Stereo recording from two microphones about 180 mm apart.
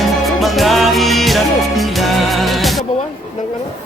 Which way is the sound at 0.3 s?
Centre (ahead or behind).